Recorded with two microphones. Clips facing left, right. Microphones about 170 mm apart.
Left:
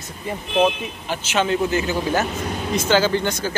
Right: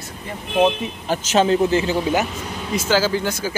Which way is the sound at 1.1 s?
40° right (ahead or behind).